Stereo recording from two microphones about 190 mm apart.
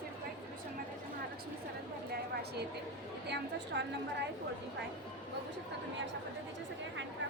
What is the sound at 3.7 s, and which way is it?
Speech, 65° right (ahead or behind).